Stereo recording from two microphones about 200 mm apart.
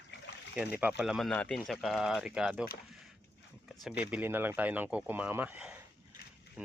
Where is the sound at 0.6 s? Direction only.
5° right (ahead or behind).